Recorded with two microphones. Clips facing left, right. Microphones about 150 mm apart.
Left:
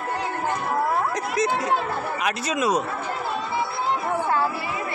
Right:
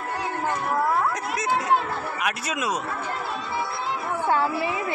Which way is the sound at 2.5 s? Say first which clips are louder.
Left 7 dB; 35° left (ahead or behind).